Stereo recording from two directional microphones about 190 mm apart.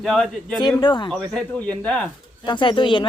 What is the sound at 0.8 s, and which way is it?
Speech, 25° left (ahead or behind).